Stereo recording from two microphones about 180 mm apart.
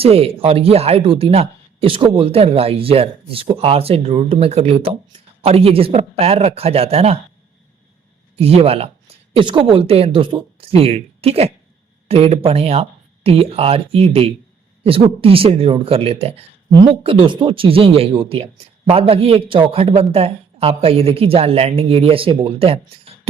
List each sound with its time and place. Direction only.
0.0 s speech: 35° right (ahead or behind)
8.4 s speech: 35° right (ahead or behind)